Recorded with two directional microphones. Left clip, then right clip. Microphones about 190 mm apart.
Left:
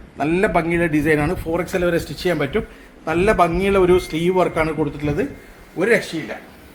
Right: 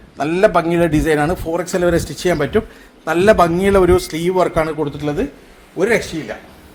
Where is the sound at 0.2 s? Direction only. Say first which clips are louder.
Right 4 dB; 50° right (ahead or behind).